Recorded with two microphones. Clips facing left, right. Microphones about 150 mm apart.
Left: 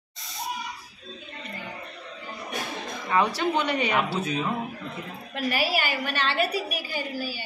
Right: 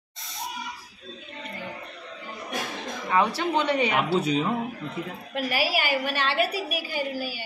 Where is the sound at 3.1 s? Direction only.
5° right (ahead or behind).